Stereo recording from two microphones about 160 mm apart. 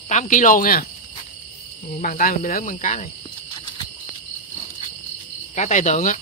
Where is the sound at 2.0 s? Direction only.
60° left (ahead or behind).